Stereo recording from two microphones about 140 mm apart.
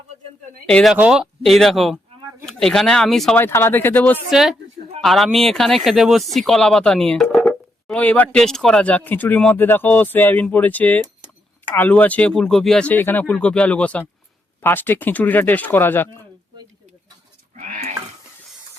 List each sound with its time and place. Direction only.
0.7 s speech: 5° left (ahead or behind)
0.9 s speech: 5° right (ahead or behind)
3.3 s speech: 15° left (ahead or behind)
4.3 s speech: centre (ahead or behind); by 16.0 s 15° left (ahead or behind)
17.6 s goat: 60° right (ahead or behind)